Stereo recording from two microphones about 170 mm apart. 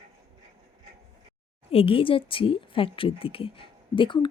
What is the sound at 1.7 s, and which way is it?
Speech, 35° left (ahead or behind).